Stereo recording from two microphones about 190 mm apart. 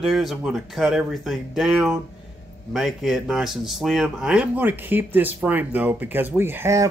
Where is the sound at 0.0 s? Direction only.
Centre (ahead or behind).